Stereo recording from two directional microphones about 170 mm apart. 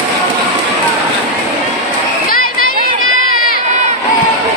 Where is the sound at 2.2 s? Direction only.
60° left (ahead or behind).